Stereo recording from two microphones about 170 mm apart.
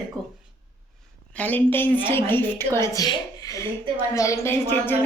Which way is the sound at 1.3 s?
10° left (ahead or behind).